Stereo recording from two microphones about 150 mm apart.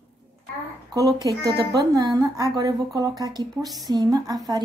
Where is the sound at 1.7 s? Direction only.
25° right (ahead or behind).